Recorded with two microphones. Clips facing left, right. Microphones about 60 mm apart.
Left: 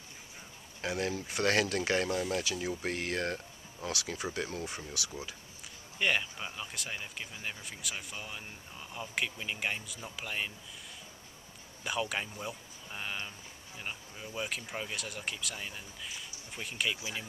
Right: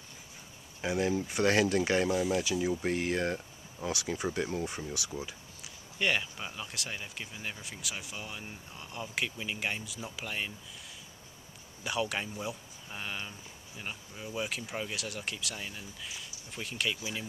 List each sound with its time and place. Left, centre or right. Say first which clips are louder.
0.7 s speech: right 4 dB; centre
5.6 s speech: even; centre
11.8 s speech: right 1 dB; centre